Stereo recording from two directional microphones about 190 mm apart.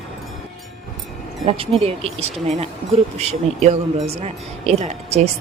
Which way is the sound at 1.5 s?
30° right (ahead or behind).